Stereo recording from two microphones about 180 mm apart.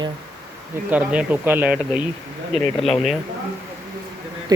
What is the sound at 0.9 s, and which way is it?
Speech, 10° right (ahead or behind).